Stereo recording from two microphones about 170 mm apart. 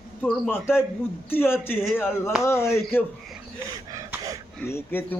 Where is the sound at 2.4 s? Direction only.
15° left (ahead or behind).